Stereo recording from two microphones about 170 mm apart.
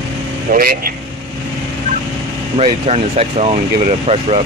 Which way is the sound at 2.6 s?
35° right (ahead or behind).